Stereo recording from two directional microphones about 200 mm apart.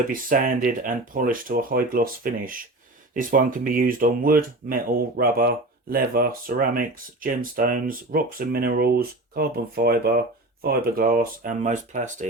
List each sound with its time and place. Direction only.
0.1 s speech: 40° right (ahead or behind)